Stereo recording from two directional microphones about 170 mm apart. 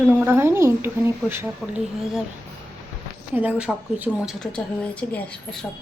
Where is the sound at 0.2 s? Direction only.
15° right (ahead or behind).